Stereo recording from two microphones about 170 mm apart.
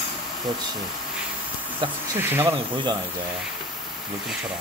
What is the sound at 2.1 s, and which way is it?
Speech, 10° right (ahead or behind).